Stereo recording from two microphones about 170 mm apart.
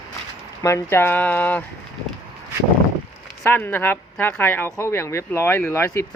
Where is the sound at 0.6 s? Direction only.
15° left (ahead or behind).